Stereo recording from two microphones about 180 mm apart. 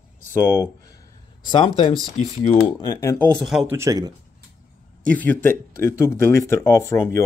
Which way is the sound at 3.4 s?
5° right (ahead or behind).